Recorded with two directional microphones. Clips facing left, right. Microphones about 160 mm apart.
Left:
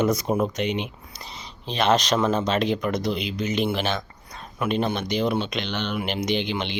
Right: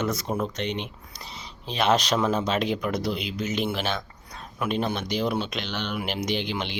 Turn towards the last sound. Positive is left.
turn(degrees=-5)  # may be behind; listen again after turning